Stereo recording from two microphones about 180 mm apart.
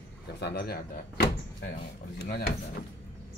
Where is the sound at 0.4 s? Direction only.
65° left (ahead or behind).